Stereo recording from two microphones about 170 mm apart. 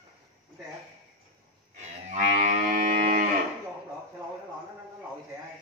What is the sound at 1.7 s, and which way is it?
Cattle, 45° right (ahead or behind).